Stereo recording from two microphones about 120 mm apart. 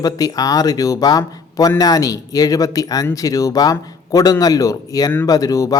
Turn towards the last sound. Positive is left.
turn(degrees=30)  # may be behind; listen again after turning